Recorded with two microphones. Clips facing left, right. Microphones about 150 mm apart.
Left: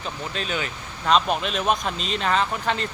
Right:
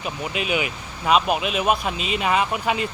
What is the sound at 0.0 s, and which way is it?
Speech, 10° right (ahead or behind).